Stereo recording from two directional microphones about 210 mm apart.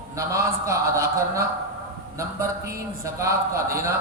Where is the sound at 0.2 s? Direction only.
15° right (ahead or behind).